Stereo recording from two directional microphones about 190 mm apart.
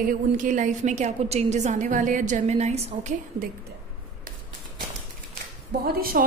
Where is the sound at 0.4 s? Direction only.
40° right (ahead or behind).